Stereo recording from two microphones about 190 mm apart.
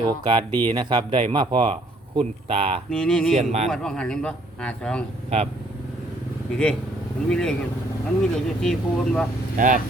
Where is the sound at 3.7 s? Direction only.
5° left (ahead or behind).